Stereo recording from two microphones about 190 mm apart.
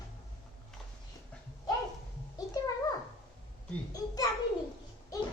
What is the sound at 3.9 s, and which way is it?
Speech, 20° left (ahead or behind).